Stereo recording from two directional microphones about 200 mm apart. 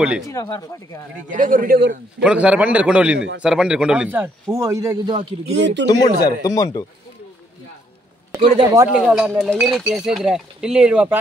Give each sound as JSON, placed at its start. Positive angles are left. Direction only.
{"t": 0.3, "sound": "speech", "side_deg": 15}
{"t": 1.3, "sound": "a man's voice", "side_deg": -40}
{"t": 2.2, "sound": "a man's voice", "side_deg": -5}
{"t": 5.9, "sound": "speech", "side_deg": 20}
{"t": 8.4, "sound": "speech", "side_deg": -25}
{"t": 8.9, "sound": "speech", "side_deg": -5}